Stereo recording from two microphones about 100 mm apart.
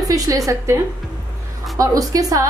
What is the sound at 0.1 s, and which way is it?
Speech, 35° right (ahead or behind).